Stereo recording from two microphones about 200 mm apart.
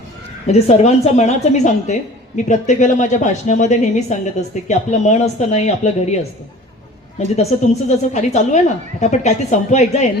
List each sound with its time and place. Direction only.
0.4 s a woman's voice: 35° left (ahead or behind)
7.2 s a woman's voice: 35° left (ahead or behind)